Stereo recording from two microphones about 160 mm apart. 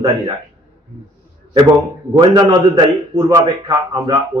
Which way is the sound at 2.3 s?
25° right (ahead or behind).